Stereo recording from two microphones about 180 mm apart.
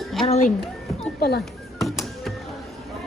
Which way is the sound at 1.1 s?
60° left (ahead or behind).